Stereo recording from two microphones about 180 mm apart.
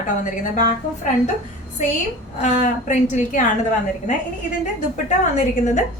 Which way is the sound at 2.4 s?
45° left (ahead or behind).